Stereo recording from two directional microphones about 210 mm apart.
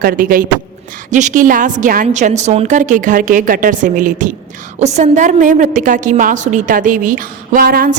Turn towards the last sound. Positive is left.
turn(degrees=-45)  # may be behind; listen again after turning